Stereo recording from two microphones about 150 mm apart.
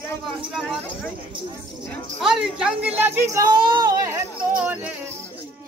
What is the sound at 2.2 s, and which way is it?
Speech, 5° right (ahead or behind).